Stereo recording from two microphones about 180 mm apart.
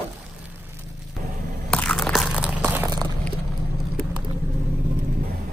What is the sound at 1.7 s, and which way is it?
Crunch, 5° left (ahead or behind).